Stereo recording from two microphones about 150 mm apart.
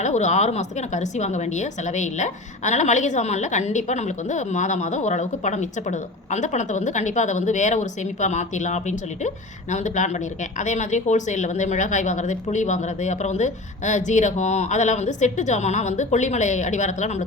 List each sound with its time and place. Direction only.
0.0 s a woman's voice: 50° left (ahead or behind)